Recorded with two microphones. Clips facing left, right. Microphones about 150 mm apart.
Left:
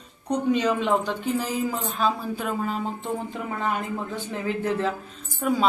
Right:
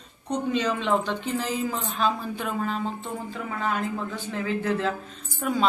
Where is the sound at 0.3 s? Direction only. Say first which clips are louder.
Left 3 dB; 15° left (ahead or behind).